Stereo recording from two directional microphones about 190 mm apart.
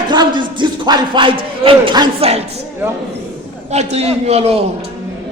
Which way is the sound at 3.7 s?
35° right (ahead or behind).